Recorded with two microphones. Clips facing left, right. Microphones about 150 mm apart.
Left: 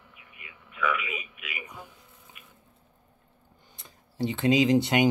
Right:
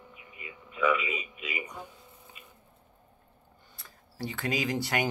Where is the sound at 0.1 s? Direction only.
25° right (ahead or behind).